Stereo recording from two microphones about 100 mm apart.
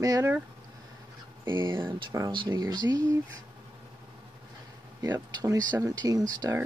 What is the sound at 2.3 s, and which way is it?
Speech, 50° right (ahead or behind).